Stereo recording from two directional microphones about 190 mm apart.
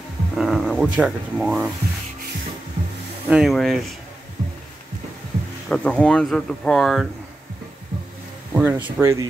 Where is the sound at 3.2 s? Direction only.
5° right (ahead or behind).